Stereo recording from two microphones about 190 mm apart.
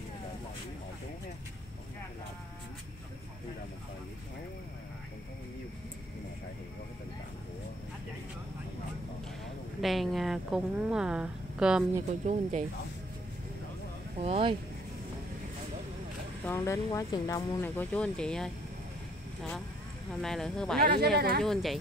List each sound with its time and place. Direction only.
9.8 s a woman's voice: centre (ahead or behind)
12.1 s speech: 40° right (ahead or behind)
14.1 s speech: 30° right (ahead or behind)
16.4 s speech: 15° left (ahead or behind)
20.1 s a woman's voice: centre (ahead or behind)
20.8 s speech: 55° right (ahead or behind)
21.4 s a woman's voice: centre (ahead or behind)